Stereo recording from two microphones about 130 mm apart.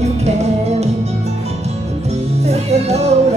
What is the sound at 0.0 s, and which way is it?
Music, 55° right (ahead or behind).